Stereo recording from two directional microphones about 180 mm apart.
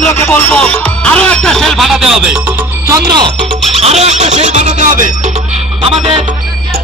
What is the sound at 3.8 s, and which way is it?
Music, 35° right (ahead or behind).